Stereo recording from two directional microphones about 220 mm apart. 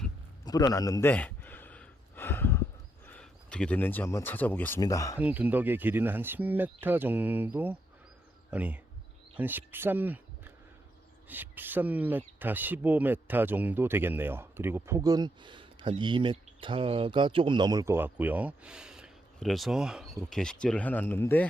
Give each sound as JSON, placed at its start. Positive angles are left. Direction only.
{"t": 0.4, "sound": "a man's voice", "side_deg": 15}
{"t": 1.1, "sound": "a sound", "side_deg": 10}
{"t": 3.1, "sound": "speech", "side_deg": 5}
{"t": 5.2, "sound": "speech", "side_deg": -5}